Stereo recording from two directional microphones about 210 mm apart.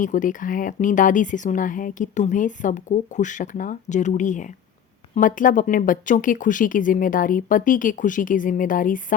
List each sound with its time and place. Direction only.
0.0 s speech: 40° left (ahead or behind)